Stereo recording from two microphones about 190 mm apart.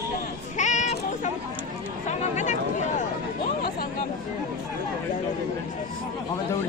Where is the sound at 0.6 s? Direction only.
40° left (ahead or behind).